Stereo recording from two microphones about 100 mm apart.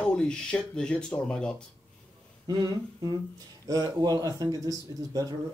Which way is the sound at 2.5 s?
40° right (ahead or behind).